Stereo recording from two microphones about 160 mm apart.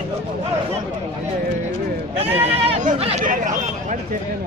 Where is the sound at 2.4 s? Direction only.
40° right (ahead or behind).